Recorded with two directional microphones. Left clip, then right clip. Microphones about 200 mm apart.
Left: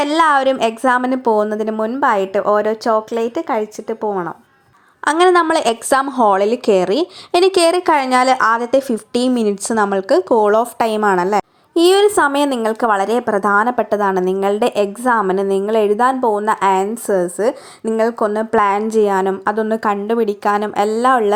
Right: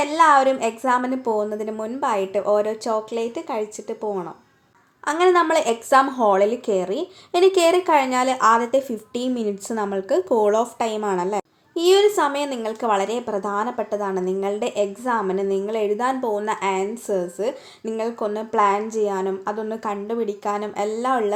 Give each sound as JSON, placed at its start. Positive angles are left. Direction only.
{"t": 0.0, "sound": "a woman's voice", "side_deg": 35}
{"t": 5.0, "sound": "a woman's voice", "side_deg": 35}